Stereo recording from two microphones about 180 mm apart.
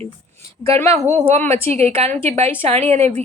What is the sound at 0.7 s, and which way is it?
A woman's voice, 30° right (ahead or behind).